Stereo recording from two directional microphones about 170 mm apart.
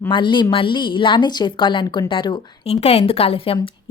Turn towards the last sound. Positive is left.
turn(degrees=30)  # may be behind; listen again after turning